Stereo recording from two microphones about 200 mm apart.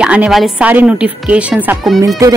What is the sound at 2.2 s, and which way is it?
Speech, 15° right (ahead or behind).